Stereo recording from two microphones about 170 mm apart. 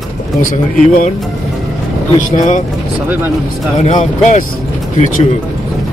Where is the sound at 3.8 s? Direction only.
45° left (ahead or behind).